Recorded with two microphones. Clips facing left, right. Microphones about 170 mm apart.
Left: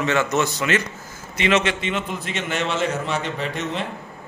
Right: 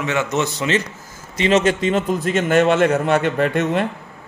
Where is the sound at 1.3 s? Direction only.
40° right (ahead or behind); by 3.9 s 55° right (ahead or behind).